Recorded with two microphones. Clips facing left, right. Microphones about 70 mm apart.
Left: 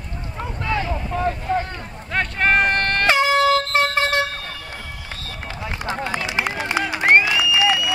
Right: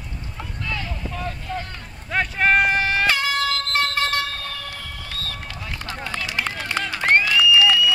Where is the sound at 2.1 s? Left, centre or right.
Centre.